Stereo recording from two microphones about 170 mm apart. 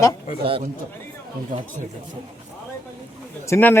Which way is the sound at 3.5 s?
10° left (ahead or behind).